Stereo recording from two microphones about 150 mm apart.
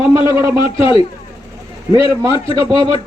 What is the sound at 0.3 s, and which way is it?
A man's voice, 35° left (ahead or behind).